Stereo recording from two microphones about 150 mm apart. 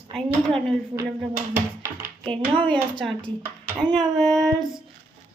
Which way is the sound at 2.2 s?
35° right (ahead or behind).